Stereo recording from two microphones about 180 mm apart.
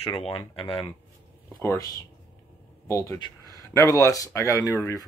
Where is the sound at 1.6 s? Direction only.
15° left (ahead or behind).